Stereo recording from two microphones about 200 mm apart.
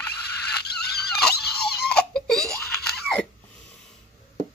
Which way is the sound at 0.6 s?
50° left (ahead or behind).